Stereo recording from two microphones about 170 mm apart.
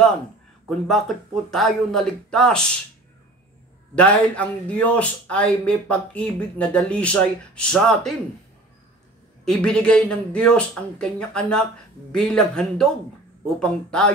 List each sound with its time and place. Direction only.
0.7 s speech: centre (ahead or behind)
3.9 s a man's voice: 5° left (ahead or behind)
9.4 s speech: 5° left (ahead or behind)